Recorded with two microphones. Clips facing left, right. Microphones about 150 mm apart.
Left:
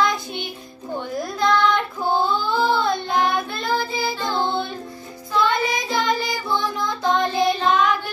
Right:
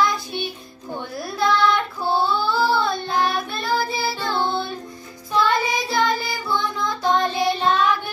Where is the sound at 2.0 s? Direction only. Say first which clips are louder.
Even; 15° left (ahead or behind).